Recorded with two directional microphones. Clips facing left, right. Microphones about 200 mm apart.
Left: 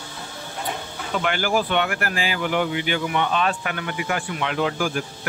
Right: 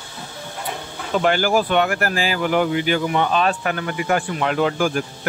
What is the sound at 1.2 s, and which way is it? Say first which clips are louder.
Speech: right 5 dB; 40° right (ahead or behind).